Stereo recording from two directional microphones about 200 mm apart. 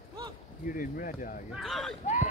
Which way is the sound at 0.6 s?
45° left (ahead or behind).